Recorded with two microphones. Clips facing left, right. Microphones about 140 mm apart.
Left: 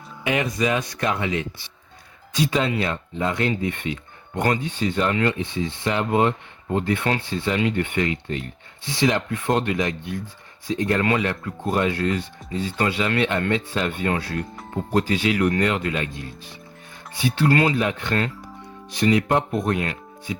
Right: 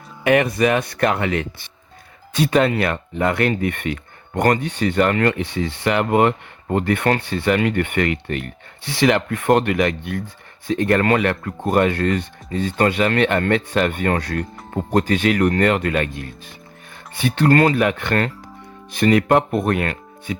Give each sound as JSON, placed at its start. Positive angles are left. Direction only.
{"t": 0.3, "sound": "speech", "side_deg": -60}
{"t": 18.9, "sound": "speech", "side_deg": -55}